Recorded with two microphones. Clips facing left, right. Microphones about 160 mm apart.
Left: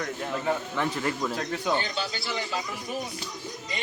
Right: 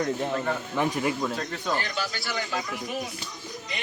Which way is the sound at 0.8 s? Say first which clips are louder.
Right 2 dB; 15° right (ahead or behind).